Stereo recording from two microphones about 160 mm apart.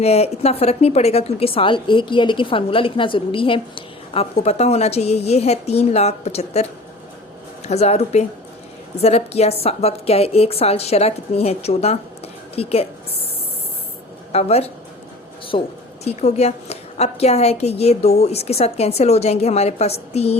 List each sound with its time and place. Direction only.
0.0 s a woman's voice: 40° left (ahead or behind)
14.3 s a woman's voice: 40° left (ahead or behind)